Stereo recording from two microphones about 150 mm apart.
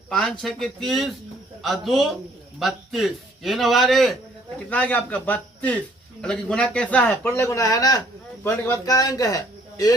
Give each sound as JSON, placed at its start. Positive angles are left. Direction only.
{"t": 0.1, "sound": "a man's voice", "side_deg": 5}
{"t": 4.7, "sound": "a man's voice", "side_deg": 10}